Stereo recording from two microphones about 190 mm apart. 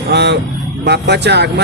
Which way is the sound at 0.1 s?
65° right (ahead or behind).